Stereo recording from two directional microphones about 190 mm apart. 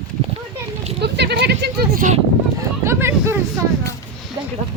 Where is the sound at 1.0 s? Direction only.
60° right (ahead or behind).